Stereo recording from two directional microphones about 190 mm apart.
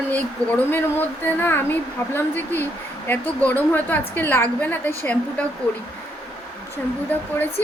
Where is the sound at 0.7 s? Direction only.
10° left (ahead or behind).